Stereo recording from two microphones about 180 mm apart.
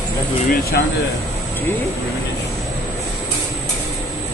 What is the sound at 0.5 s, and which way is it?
Speech, 60° left (ahead or behind).